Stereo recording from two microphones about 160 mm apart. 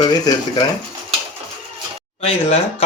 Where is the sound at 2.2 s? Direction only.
40° left (ahead or behind).